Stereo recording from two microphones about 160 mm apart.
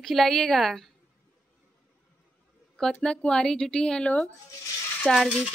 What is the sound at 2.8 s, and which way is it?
A woman's voice, 5° left (ahead or behind).